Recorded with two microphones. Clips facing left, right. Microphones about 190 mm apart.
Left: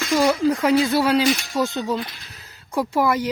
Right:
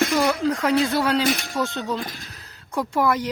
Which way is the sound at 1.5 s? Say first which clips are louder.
Left 3 dB; 10° left (ahead or behind).